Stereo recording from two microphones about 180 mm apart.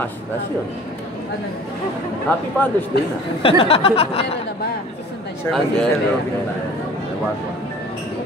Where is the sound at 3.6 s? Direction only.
30° left (ahead or behind).